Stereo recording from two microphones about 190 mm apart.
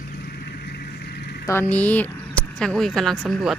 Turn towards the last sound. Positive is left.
turn(degrees=0)  # may be behind; listen again after turning